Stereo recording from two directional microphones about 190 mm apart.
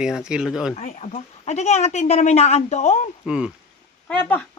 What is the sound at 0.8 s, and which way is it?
Speech, 35° left (ahead or behind).